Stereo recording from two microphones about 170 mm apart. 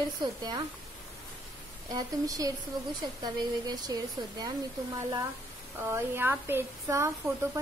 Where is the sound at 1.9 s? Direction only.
20° right (ahead or behind).